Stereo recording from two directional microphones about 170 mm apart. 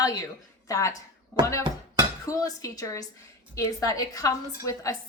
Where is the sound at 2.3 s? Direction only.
20° left (ahead or behind).